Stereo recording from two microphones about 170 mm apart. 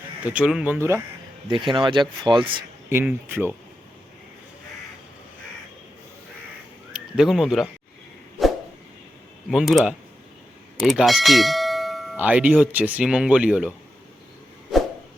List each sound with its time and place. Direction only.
0.3 s speech: 5° right (ahead or behind)
1.5 s speech: 30° right (ahead or behind)
2.9 s speech: 15° right (ahead or behind)
6.9 s speech: centre (ahead or behind)
8.4 s dog: centre (ahead or behind)
9.5 s speech: centre (ahead or behind)